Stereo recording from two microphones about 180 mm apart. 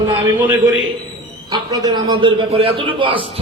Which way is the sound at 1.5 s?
20° right (ahead or behind).